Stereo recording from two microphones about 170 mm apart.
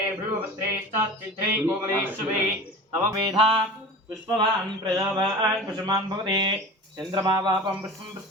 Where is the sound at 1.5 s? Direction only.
10° right (ahead or behind).